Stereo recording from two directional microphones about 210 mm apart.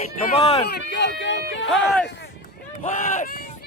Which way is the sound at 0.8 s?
55° left (ahead or behind).